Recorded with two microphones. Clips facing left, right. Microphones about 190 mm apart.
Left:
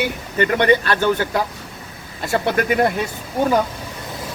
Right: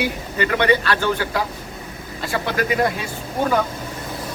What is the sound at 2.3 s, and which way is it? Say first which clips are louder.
Speech: left 3 dB; 50° left (ahead or behind).